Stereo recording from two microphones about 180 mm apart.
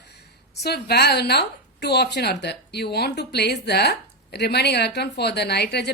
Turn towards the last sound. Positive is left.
turn(degrees=65)  # may be behind; listen again after turning